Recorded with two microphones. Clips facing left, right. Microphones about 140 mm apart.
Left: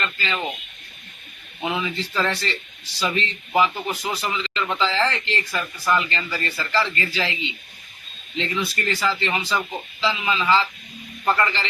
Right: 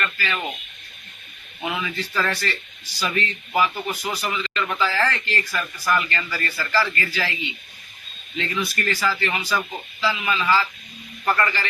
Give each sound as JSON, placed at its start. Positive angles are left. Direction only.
{"t": 0.0, "sound": "speech", "side_deg": 20}
{"t": 1.6, "sound": "speech", "side_deg": 25}